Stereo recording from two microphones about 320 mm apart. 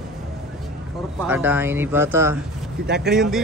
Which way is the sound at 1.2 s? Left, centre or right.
Centre.